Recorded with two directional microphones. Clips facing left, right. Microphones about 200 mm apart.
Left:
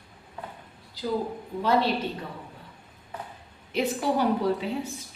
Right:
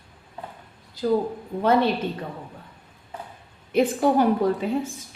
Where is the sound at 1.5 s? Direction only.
50° right (ahead or behind).